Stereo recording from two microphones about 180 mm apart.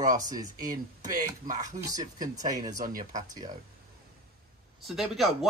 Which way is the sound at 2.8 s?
50° right (ahead or behind).